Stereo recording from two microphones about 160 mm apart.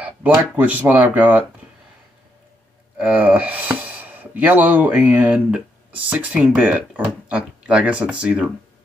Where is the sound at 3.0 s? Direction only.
10° right (ahead or behind).